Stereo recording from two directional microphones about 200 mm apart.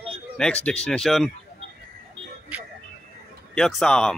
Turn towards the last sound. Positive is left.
turn(degrees=0)  # may be behind; listen again after turning